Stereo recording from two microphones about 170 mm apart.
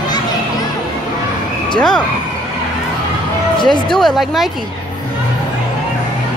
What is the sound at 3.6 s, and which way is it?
Speech, 25° left (ahead or behind).